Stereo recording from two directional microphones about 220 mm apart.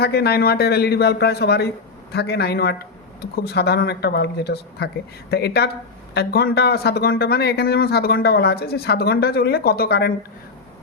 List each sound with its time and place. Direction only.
0.0 s speech: 45° left (ahead or behind)